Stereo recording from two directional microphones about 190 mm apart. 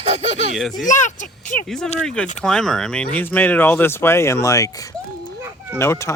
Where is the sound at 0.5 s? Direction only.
Centre (ahead or behind).